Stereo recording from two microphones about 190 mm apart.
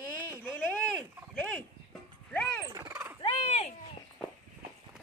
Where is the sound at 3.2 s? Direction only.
35° left (ahead or behind).